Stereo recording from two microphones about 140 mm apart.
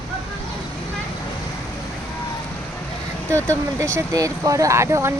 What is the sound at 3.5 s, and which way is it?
Speech, 20° right (ahead or behind).